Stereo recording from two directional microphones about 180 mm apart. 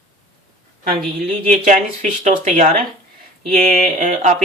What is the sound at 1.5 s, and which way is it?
A man's voice, 40° right (ahead or behind).